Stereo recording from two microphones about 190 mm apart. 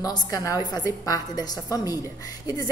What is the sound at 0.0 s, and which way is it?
A woman's voice, 20° left (ahead or behind).